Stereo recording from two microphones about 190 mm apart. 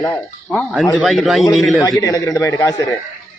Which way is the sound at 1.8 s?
15° left (ahead or behind).